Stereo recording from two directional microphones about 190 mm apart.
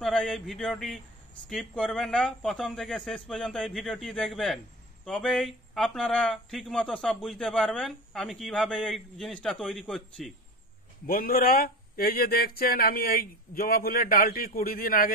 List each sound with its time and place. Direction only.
0.0 s speech: 5° left (ahead or behind)
11.1 s speech: 50° left (ahead or behind)